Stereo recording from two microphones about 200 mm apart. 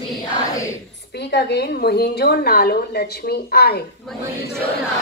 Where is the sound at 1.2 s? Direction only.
55° left (ahead or behind).